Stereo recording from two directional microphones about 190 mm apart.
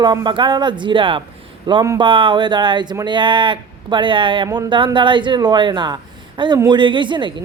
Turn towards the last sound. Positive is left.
turn(degrees=-25)  # may be behind; listen again after turning